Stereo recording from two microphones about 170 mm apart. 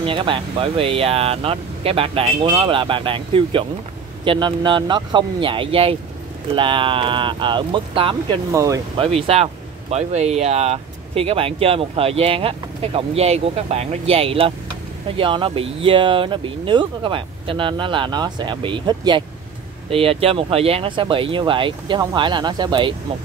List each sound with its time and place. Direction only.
0.0 s speech: 30° right (ahead or behind)
8.5 s speech: 20° right (ahead or behind)
8.9 s speech: 30° right (ahead or behind)